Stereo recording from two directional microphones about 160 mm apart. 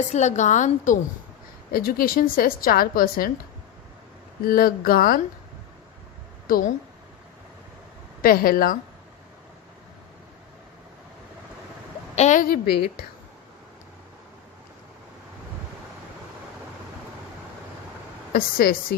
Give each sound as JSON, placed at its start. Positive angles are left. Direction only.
{"t": 0.1, "sound": "a woman's voice", "side_deg": 45}
{"t": 1.7, "sound": "a woman's voice", "side_deg": 65}
{"t": 4.4, "sound": "a woman's voice", "side_deg": 65}
{"t": 6.5, "sound": "a woman's voice", "side_deg": 55}
{"t": 8.2, "sound": "a woman's voice", "side_deg": 65}
{"t": 12.1, "sound": "a woman's voice", "side_deg": 45}
{"t": 12.5, "sound": "a woman's voice", "side_deg": 75}
{"t": 18.3, "sound": "a woman's voice", "side_deg": 70}